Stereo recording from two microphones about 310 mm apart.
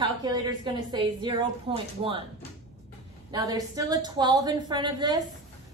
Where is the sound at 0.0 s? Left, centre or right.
Centre.